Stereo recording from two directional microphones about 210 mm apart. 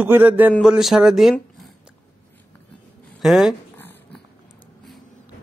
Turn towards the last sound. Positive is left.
turn(degrees=10)  # may be behind; listen again after turning